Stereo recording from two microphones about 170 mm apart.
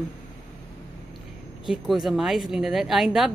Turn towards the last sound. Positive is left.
turn(degrees=0)  # may be behind; listen again after turning